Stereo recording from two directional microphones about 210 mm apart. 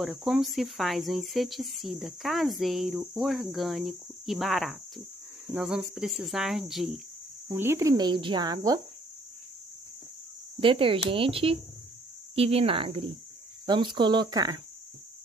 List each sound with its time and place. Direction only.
0.0 s speech: centre (ahead or behind); by 8.8 s 20° right (ahead or behind)
10.6 s speech: 25° right (ahead or behind)